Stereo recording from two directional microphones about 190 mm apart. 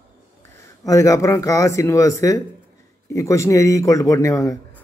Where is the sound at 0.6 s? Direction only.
15° left (ahead or behind).